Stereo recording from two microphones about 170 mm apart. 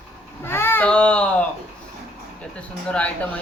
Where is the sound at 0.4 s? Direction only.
15° left (ahead or behind).